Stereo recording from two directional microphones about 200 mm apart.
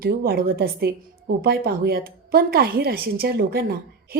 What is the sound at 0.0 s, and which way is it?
A woman's voice, 50° right (ahead or behind).